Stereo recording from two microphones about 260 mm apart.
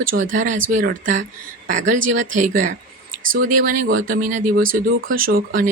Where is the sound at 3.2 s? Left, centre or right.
Right.